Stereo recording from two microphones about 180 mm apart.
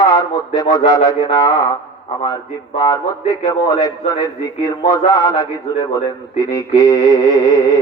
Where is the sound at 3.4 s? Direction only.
20° left (ahead or behind).